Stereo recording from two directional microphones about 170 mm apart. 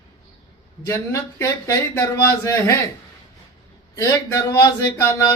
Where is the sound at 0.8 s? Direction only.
15° left (ahead or behind).